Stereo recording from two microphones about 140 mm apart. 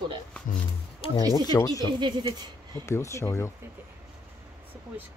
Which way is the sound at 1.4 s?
25° left (ahead or behind).